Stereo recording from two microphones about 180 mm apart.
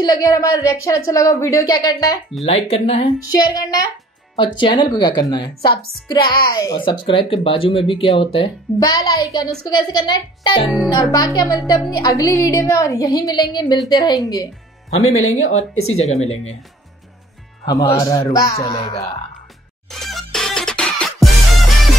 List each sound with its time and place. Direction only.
0.0 s a woman's voice: 20° left (ahead or behind)
2.4 s speech: 35° left (ahead or behind)
3.2 s a woman's voice: 20° left (ahead or behind)
10.6 s music: centre (ahead or behind)
10.9 s a woman's voice: 20° left (ahead or behind)
15.3 s speech: 35° left (ahead or behind)
17.6 s a woman's voice: 20° left (ahead or behind)
19.9 s music: centre (ahead or behind)